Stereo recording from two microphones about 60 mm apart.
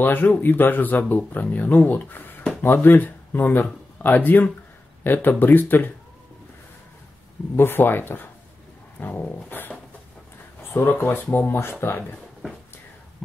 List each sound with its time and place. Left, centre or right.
0.0 s speech: left
7.5 s speech: left
10.7 s speech: left